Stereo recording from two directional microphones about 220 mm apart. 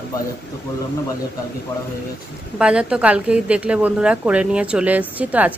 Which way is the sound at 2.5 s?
5° right (ahead or behind).